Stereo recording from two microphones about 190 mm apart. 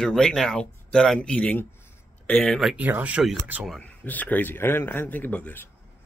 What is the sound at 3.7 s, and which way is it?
A man's voice, 10° left (ahead or behind).